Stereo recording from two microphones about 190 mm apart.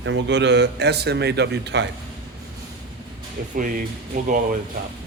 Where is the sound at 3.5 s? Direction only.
45° right (ahead or behind).